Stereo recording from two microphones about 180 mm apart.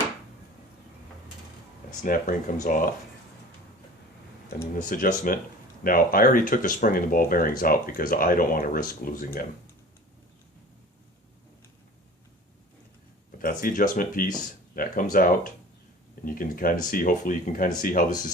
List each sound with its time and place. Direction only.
2.0 s speech: 45° left (ahead or behind)
4.7 s speech: 45° left (ahead or behind)
13.4 s speech: 50° left (ahead or behind)